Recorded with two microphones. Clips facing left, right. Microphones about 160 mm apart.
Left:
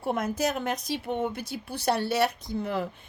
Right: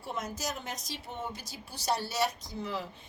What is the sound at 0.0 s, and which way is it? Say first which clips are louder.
A woman's voice: left 10 dB; 55° left (ahead or behind).